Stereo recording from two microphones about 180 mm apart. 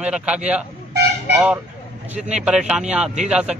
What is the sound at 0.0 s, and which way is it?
A man's voice, 5° right (ahead or behind).